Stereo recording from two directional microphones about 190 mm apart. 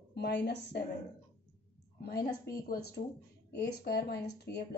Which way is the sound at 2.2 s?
20° left (ahead or behind).